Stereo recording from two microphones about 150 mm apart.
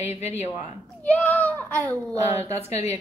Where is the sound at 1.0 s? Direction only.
10° left (ahead or behind).